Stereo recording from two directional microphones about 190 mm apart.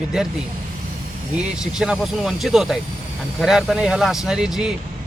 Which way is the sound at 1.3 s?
5° right (ahead or behind).